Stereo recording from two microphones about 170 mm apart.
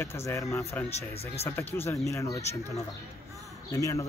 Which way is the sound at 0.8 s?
35° left (ahead or behind).